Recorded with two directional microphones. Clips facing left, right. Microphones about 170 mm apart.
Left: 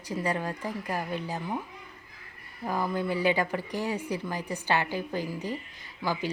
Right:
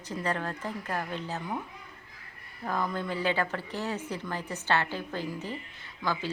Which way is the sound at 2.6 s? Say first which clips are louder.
Left 2 dB; 10° left (ahead or behind).